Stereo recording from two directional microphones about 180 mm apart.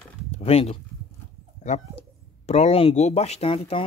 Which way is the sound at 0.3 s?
35° left (ahead or behind).